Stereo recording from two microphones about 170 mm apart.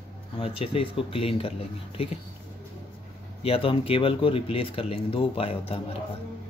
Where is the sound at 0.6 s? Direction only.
35° left (ahead or behind).